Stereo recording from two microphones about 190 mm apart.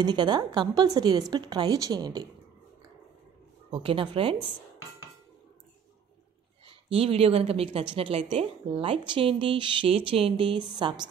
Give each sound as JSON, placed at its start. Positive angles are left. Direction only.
{"t": 0.0, "sound": "a woman's voice", "side_deg": -25}
{"t": 3.7, "sound": "a woman's voice", "side_deg": -30}
{"t": 6.6, "sound": "a woman's voice", "side_deg": -30}